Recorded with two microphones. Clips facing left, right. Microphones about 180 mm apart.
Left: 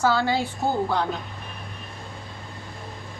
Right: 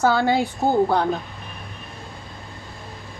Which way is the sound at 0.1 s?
50° right (ahead or behind).